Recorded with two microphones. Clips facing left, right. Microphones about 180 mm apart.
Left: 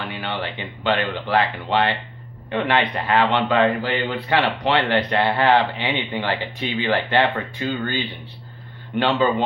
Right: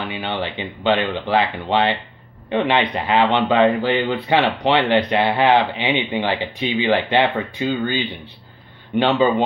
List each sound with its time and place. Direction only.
0.0 s speech: 20° right (ahead or behind)